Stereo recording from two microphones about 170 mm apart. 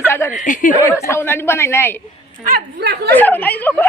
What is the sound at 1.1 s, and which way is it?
Speech, 15° left (ahead or behind).